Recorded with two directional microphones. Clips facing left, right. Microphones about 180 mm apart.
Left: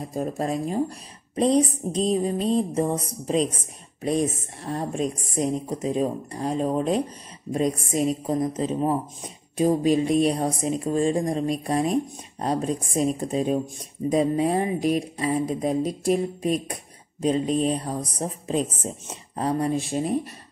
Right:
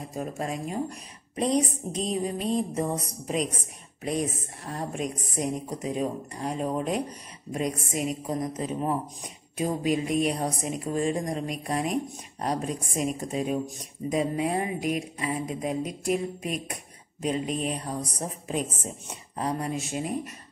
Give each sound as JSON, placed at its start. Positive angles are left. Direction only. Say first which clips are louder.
{"t": 0.1, "sound": "a woman's voice", "louder": "left 6 dB", "side_deg": 35}